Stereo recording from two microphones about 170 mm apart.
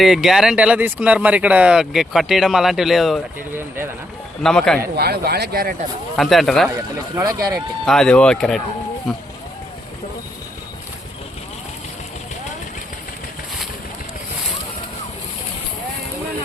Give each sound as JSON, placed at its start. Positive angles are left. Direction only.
{"t": 0.0, "sound": "speech", "side_deg": 0}
{"t": 4.4, "sound": "speech", "side_deg": 5}
{"t": 4.9, "sound": "speech", "side_deg": -70}
{"t": 6.1, "sound": "speech", "side_deg": 0}
{"t": 7.2, "sound": "speech", "side_deg": -20}
{"t": 7.9, "sound": "speech", "side_deg": 5}